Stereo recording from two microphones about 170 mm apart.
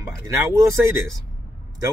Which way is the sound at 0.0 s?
20° right (ahead or behind).